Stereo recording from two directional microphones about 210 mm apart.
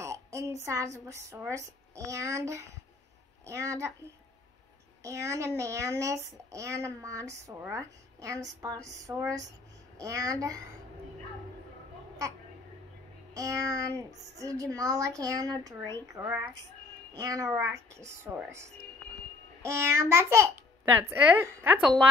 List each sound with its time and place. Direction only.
0.0 s a woman's voice: 15° right (ahead or behind)
5.0 s speech: 15° right (ahead or behind)
13.3 s speech: 15° right (ahead or behind)